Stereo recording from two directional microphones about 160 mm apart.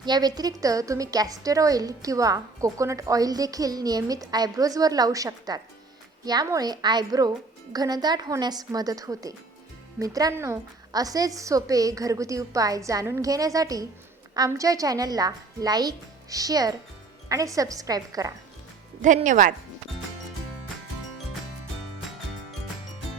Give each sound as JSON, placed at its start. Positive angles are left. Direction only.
{"t": 0.0, "sound": "a woman's voice", "side_deg": -25}
{"t": 19.0, "sound": "speech", "side_deg": -50}